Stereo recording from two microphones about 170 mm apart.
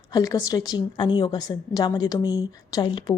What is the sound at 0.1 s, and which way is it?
A woman's voice, 20° left (ahead or behind).